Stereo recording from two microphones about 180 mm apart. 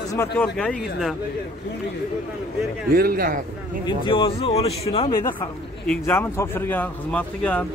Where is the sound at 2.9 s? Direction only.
55° right (ahead or behind).